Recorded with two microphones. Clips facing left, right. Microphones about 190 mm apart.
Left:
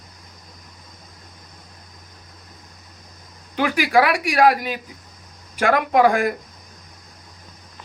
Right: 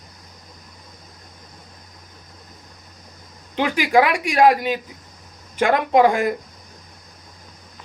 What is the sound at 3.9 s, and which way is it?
A woman's voice, 25° right (ahead or behind).